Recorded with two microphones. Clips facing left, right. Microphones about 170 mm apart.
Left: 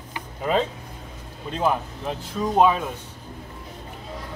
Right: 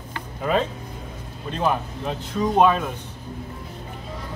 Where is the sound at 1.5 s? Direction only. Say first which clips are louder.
Even; 5° left (ahead or behind).